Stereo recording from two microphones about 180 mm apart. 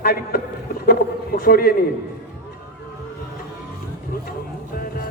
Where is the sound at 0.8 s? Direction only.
55° left (ahead or behind).